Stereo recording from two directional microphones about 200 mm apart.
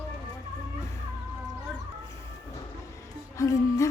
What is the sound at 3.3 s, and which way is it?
Music, 15° left (ahead or behind).